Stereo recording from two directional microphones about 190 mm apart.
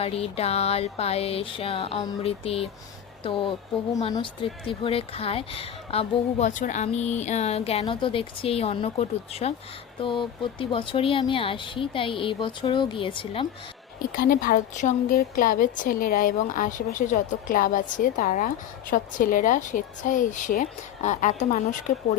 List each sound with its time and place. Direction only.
0.0 s a woman's voice: 30° left (ahead or behind)
14.1 s a woman's voice: 45° left (ahead or behind)